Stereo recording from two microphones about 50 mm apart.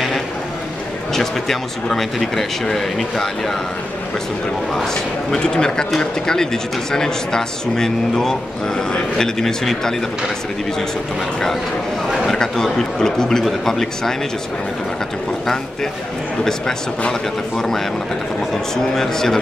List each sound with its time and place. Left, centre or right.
1.1 s speech: centre
5.3 s speech: centre
12.3 s speech: centre
15.4 s speech: centre
17.1 s speech: centre